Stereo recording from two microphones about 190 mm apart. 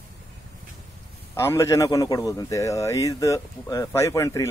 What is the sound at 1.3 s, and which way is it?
A man's voice, 15° left (ahead or behind).